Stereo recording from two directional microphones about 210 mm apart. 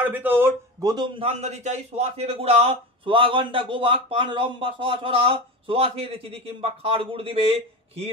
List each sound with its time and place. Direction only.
0.0 s a man's voice: 10° right (ahead or behind); by 8.1 s 25° right (ahead or behind)